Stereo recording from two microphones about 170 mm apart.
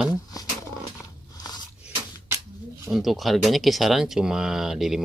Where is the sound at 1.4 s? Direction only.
25° left (ahead or behind).